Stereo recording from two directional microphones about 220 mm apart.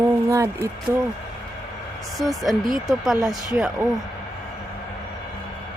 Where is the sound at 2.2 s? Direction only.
Centre (ahead or behind).